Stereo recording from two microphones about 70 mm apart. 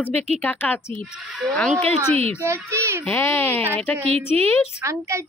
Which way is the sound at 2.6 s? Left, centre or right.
Right.